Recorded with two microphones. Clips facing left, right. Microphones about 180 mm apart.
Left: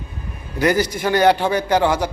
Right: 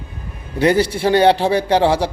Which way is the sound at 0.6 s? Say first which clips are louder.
Right 3 dB; 30° right (ahead or behind).